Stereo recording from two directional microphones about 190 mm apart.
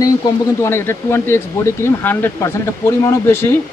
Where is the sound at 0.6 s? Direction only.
15° left (ahead or behind).